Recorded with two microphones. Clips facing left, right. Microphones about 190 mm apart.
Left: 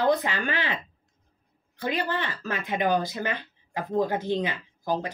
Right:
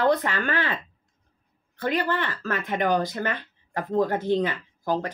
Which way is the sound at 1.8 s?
10° left (ahead or behind).